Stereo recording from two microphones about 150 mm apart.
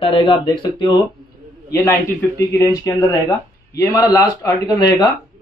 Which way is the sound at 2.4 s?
20° left (ahead or behind).